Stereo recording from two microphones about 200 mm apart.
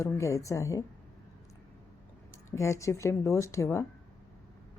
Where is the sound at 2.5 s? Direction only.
15° left (ahead or behind).